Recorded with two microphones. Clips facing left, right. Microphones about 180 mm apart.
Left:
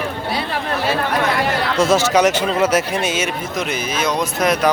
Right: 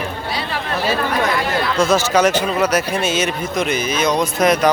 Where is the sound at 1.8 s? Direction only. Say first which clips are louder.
Left 1 dB; 20° left (ahead or behind).